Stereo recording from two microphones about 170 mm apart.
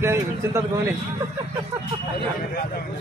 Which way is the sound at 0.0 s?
15° right (ahead or behind).